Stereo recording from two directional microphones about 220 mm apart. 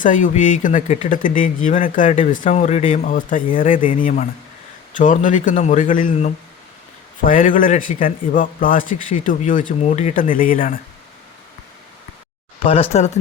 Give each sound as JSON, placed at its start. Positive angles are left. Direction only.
{"t": 0.0, "sound": "speech", "side_deg": 35}
{"t": 12.6, "sound": "speech", "side_deg": 25}